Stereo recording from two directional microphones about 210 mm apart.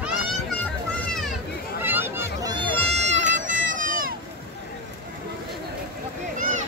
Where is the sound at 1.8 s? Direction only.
10° right (ahead or behind).